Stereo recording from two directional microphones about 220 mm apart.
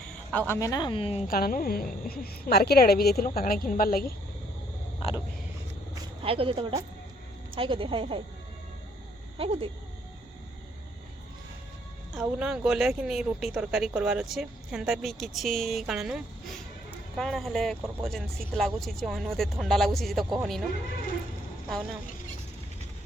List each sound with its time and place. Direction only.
0.3 s speech: 10° left (ahead or behind)
1.3 s a woman's voice: 40° left (ahead or behind)
4.9 s a sound: 25° left (ahead or behind)
5.9 s a sound: 25° right (ahead or behind)
7.5 s speech: 25° right (ahead or behind)
9.4 s speech: 25° right (ahead or behind)
12.1 s speech: 5° right (ahead or behind)